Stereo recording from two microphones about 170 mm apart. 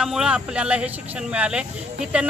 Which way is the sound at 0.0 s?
5° right (ahead or behind).